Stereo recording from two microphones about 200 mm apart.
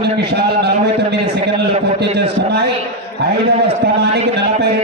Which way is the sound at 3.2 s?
55° right (ahead or behind).